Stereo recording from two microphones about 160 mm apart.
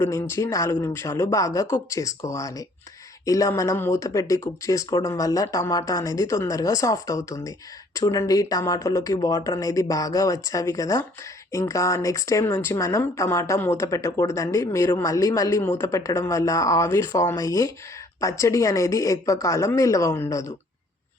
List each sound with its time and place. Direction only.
0.0 s speech: 15° left (ahead or behind)